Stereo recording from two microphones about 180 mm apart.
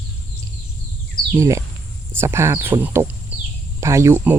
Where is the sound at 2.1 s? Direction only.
15° right (ahead or behind).